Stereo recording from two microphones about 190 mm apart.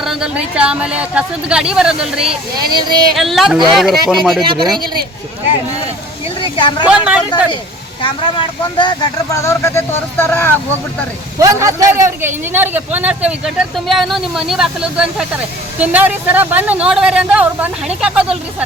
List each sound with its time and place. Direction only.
0.0 s a woman's voice: 5° right (ahead or behind)
2.2 s speech: 30° right (ahead or behind)
3.2 s a woman's voice: centre (ahead or behind)
4.4 s speech: 25° right (ahead or behind)
6.4 s speech: 25° left (ahead or behind)
6.8 s speech: 5° right (ahead or behind)
8.0 s speech: 25° left (ahead or behind)
11.3 s speech: 15° right (ahead or behind)